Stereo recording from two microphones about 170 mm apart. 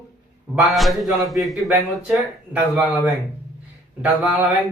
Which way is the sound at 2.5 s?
10° right (ahead or behind).